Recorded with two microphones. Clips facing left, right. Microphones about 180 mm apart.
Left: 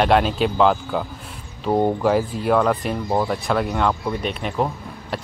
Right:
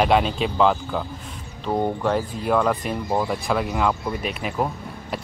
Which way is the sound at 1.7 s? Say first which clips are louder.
Left 4 dB; 15° left (ahead or behind).